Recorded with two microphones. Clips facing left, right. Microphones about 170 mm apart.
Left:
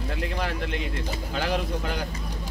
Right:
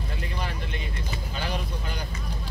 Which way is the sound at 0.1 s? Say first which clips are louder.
Left 5 dB; 85° left.